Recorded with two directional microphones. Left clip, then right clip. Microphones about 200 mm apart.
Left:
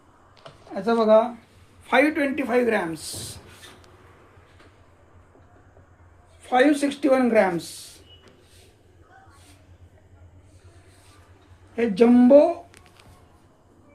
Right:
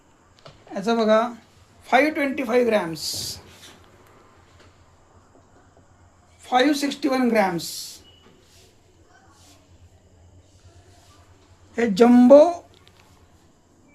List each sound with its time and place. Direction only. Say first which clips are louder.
0.7 s speech: left 2 dB; 45° right (ahead or behind)
1.9 s speech: right 1 dB; 25° right (ahead or behind)
6.4 s speech: left 1 dB; 20° right (ahead or behind)
11.8 s speech: right 2 dB; 55° right (ahead or behind)